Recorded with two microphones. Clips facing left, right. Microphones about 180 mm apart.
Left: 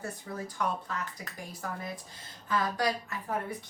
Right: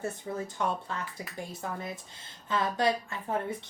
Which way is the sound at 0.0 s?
25° right (ahead or behind).